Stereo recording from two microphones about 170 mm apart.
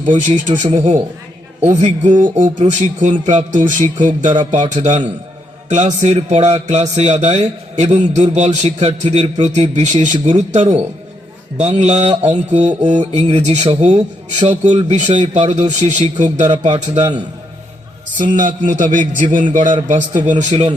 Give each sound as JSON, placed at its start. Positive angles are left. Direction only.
{"t": 0.3, "sound": "a man's voice", "side_deg": -45}
{"t": 18.3, "sound": "a man's voice", "side_deg": -50}